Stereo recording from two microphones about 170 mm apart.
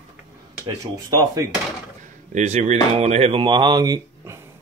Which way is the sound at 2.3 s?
40° right (ahead or behind).